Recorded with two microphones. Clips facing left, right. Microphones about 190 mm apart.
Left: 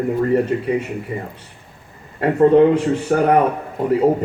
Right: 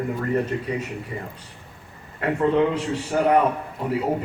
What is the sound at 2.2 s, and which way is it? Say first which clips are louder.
A man's voice: left 8 dB; 45° left (ahead or behind).